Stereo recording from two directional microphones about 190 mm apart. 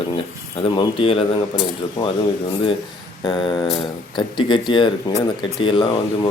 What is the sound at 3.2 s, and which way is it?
Speech, 25° left (ahead or behind).